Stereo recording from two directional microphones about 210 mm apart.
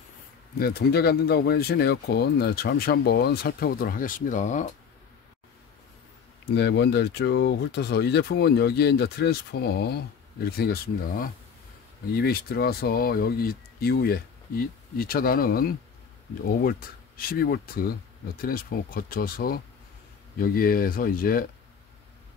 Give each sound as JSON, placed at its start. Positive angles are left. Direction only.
{"t": 0.6, "sound": "speech", "side_deg": 50}
{"t": 6.5, "sound": "speech", "side_deg": 55}
{"t": 17.2, "sound": "speech", "side_deg": 45}